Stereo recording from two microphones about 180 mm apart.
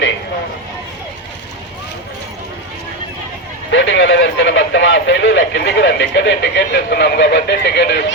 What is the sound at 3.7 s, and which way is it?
Speech, 85° left.